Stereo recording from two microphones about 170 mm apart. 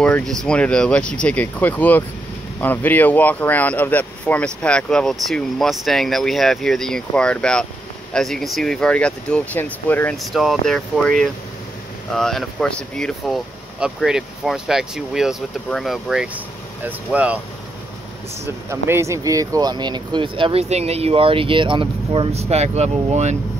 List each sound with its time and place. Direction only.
0.0 s speech: 5° left (ahead or behind)
18.4 s speech: 15° right (ahead or behind); by 23.3 s 40° right (ahead or behind)